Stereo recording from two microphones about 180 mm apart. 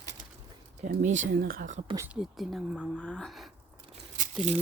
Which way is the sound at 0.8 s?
45° right (ahead or behind).